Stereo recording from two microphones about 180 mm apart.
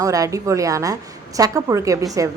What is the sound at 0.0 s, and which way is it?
A woman's voice, 20° right (ahead or behind).